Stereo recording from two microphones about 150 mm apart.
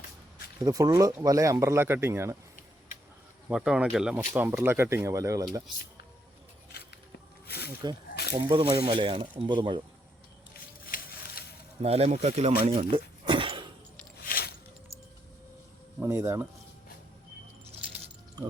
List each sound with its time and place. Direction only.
0.6 s speech: 20° right (ahead or behind)
3.5 s speech: 5° right (ahead or behind); by 5.5 s 20° right (ahead or behind)
7.4 s snake: 90° left
8.1 s a sound: 90° left
8.4 s speech: 30° right (ahead or behind)
10.8 s a sound: 80° left
11.8 s speech: 45° right (ahead or behind)
14.3 s a sound: 80° left
16.0 s speech: 15° right (ahead or behind)
18.4 s music: 25° right (ahead or behind)